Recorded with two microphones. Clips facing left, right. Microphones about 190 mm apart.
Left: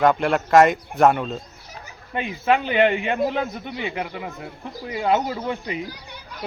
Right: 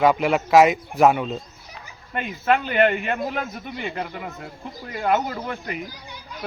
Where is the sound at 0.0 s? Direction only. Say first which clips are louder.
Even; 5° right (ahead or behind).